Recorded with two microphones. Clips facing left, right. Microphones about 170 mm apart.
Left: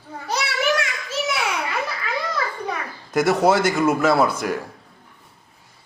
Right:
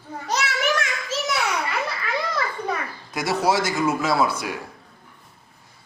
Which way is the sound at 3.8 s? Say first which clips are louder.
Left 3 dB; 50° left (ahead or behind).